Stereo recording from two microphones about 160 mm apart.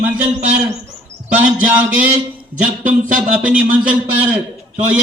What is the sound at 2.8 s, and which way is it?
Speech, 55° right (ahead or behind).